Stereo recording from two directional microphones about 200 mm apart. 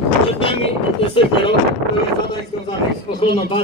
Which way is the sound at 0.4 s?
25° left (ahead or behind).